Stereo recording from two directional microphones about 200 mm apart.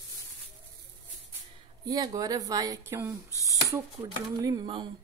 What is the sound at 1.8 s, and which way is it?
Speech, 20° right (ahead or behind).